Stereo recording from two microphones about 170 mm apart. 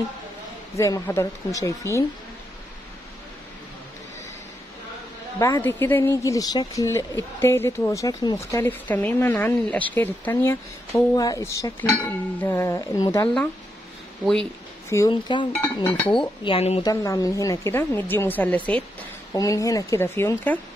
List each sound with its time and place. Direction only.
0.7 s speech: 20° left (ahead or behind)
5.4 s speech: 15° left (ahead or behind)
14.2 s speech: 5° left (ahead or behind)
15.0 s speech: 25° left (ahead or behind)
16.0 s speech: 5° left (ahead or behind)
16.4 s speech: 35° left (ahead or behind)
16.8 s speech: 20° left (ahead or behind)
19.3 s speech: 20° left (ahead or behind)